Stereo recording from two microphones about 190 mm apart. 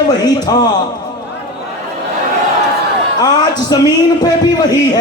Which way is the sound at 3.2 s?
20° left (ahead or behind).